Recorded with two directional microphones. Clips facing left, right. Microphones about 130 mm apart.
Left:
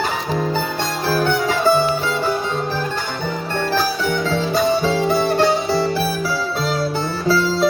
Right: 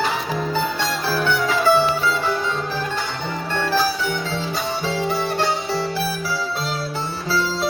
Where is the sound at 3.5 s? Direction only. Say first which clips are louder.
Even; 45° left (ahead or behind).